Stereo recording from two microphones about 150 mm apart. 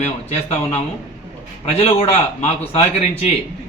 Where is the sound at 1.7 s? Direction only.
45° left (ahead or behind).